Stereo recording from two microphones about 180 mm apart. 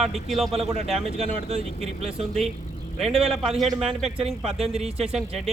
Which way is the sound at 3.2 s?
Centre (ahead or behind).